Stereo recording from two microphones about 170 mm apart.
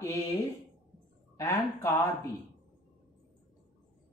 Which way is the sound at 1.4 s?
15° left (ahead or behind).